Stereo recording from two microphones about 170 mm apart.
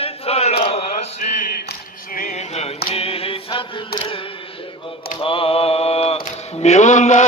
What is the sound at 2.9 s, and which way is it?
Chant, 35° left (ahead or behind).